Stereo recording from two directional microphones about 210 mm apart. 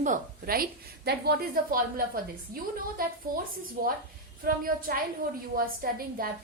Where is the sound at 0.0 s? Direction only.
40° right (ahead or behind).